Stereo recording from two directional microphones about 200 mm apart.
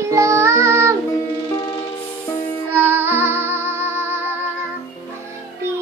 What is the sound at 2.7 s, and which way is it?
Music, 10° right (ahead or behind).